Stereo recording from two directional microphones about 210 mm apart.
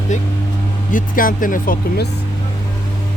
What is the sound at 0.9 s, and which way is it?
Speech, 40° left (ahead or behind).